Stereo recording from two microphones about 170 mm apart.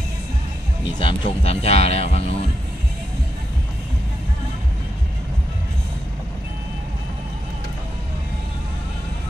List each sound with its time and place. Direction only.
1.2 s speech: 35° left (ahead or behind)